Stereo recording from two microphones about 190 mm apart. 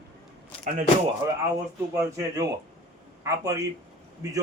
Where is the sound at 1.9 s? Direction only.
15° right (ahead or behind).